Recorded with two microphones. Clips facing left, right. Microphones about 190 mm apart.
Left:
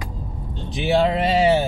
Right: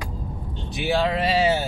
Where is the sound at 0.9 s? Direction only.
25° left (ahead or behind).